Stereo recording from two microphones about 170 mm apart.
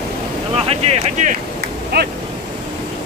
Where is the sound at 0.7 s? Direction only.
40° right (ahead or behind).